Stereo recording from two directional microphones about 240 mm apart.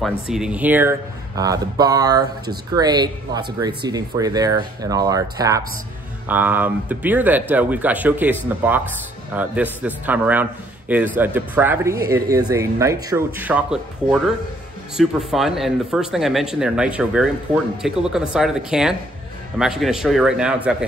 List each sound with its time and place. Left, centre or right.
0.0 s speech: centre
15.0 s speech: centre